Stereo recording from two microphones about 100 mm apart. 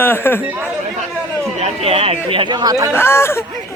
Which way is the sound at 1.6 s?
80° right.